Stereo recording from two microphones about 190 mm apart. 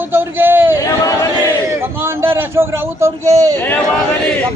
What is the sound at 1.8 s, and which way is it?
A man's voice, 15° right (ahead or behind).